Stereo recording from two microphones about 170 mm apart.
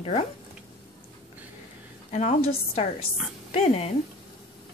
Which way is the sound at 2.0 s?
45° left (ahead or behind).